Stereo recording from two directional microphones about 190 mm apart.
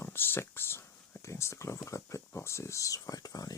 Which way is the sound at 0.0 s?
10° left (ahead or behind).